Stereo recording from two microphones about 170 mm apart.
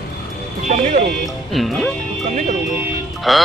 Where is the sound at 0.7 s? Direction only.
45° right (ahead or behind).